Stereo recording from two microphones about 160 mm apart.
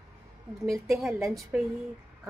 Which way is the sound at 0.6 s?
Centre (ahead or behind).